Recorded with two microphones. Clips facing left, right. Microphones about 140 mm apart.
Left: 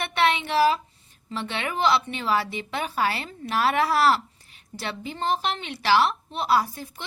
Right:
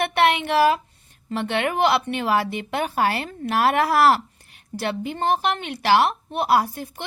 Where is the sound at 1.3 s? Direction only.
55° right (ahead or behind).